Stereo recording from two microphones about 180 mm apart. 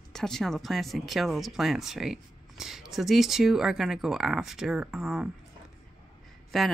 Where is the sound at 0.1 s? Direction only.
Centre (ahead or behind).